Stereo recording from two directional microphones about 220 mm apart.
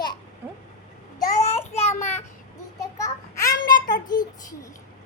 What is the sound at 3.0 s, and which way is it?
Child singing, 15° left (ahead or behind).